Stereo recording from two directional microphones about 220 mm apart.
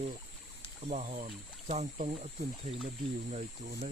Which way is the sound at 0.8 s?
30° right (ahead or behind).